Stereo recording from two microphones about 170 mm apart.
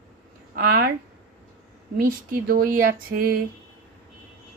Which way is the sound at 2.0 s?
55° right (ahead or behind).